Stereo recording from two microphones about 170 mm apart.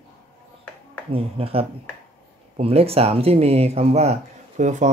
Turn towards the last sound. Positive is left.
turn(degrees=-45)  # may be behind; listen again after turning